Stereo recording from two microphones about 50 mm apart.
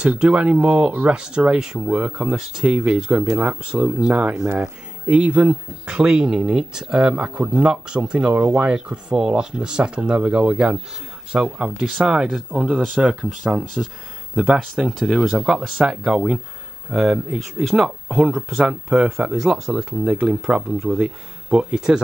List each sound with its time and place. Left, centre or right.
0.0 s speech: right
5.5 s speech: centre